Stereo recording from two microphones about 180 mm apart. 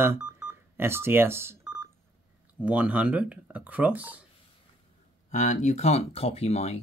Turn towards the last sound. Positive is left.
turn(degrees=35)  # may be behind; listen again after turning